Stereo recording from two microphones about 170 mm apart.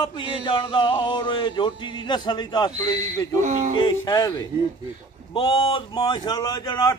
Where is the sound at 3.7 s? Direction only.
25° left (ahead or behind).